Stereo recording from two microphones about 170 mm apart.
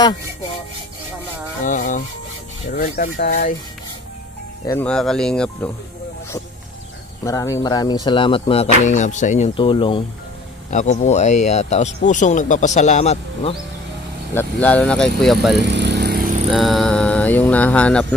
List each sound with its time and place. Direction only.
1.6 s speech: 50° left (ahead or behind)
2.7 s speech: 60° left (ahead or behind)
4.6 s speech: 10° left (ahead or behind)
7.2 s speech: 20° left (ahead or behind); by 9.5 s 45° left (ahead or behind)
9.6 s speech: 30° left (ahead or behind)
10.7 s speech: 45° left (ahead or behind)
14.3 s speech: 10° left (ahead or behind)
15.6 s vehicle: 90° right; by 16.3 s 65° right (ahead or behind)
16.4 s speech: centre (ahead or behind)